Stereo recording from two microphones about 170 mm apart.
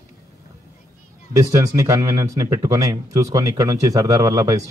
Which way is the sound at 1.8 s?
20° right (ahead or behind).